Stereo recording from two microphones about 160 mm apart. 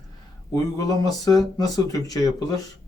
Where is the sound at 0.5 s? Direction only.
25° left (ahead or behind).